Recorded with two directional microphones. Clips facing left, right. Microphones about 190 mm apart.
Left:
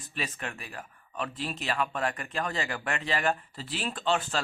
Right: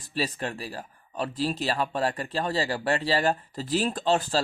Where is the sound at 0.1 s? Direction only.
35° right (ahead or behind).